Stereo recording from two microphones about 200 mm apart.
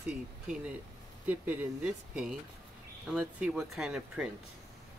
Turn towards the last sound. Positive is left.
turn(degrees=-5)  # may be behind; listen again after turning